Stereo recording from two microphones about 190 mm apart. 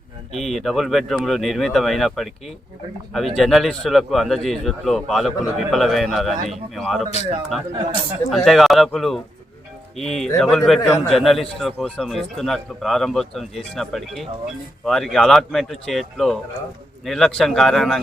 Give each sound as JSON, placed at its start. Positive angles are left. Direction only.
{"t": 0.3, "sound": "a man's voice", "side_deg": 0}
{"t": 7.0, "sound": "speech", "side_deg": 35}
{"t": 7.5, "sound": "a man's voice", "side_deg": 0}